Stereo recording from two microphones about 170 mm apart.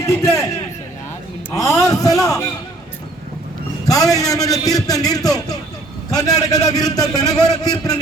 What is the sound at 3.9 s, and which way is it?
A man's voice, 20° left (ahead or behind).